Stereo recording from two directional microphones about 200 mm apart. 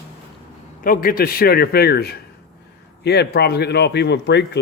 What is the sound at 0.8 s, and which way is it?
A man's voice, 45° left (ahead or behind).